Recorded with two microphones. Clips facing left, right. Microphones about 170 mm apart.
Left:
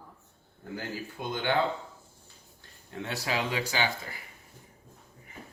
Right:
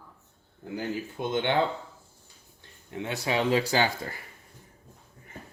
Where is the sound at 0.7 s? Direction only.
20° right (ahead or behind).